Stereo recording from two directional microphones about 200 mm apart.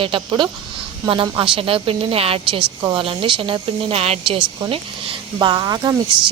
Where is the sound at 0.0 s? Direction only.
25° right (ahead or behind).